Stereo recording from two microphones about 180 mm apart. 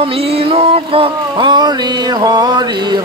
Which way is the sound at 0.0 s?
35° right (ahead or behind).